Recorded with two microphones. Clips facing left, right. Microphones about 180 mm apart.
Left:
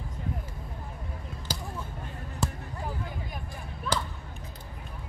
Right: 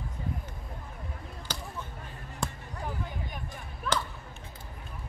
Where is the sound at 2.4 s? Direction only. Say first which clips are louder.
Left 3 dB; 5° left (ahead or behind).